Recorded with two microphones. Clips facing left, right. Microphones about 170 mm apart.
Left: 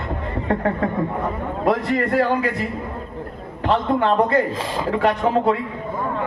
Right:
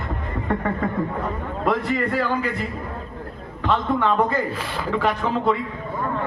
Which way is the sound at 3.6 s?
65° left (ahead or behind).